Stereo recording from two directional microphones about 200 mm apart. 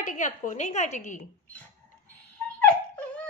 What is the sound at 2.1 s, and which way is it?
Dog, 5° left (ahead or behind).